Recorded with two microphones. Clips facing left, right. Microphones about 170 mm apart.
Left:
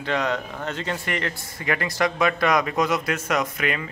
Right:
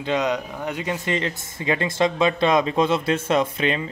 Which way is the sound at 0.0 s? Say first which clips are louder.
Right 2 dB; 20° right (ahead or behind).